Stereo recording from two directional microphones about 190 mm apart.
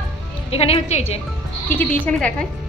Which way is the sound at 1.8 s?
5° left (ahead or behind).